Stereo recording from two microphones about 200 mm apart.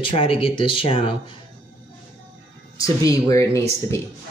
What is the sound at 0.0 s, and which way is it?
Speech, 25° left (ahead or behind).